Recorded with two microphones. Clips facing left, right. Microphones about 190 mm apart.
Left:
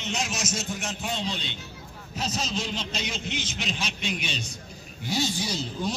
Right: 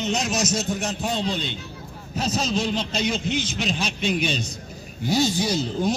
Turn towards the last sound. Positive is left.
turn(degrees=-45)  # may be behind; listen again after turning